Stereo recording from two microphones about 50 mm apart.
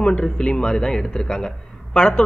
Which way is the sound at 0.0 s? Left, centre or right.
Centre.